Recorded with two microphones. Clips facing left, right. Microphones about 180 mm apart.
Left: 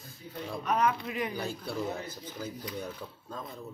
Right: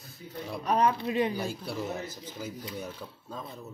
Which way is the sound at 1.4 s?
10° right (ahead or behind).